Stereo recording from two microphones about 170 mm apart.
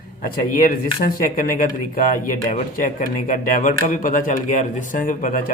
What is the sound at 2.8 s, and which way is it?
Speech, 50° left (ahead or behind).